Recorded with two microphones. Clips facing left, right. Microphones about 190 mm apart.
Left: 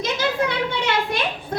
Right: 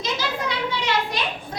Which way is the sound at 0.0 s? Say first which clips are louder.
Left 5 dB; 55° left (ahead or behind).